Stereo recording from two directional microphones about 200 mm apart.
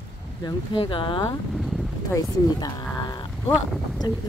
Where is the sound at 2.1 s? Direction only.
20° left (ahead or behind).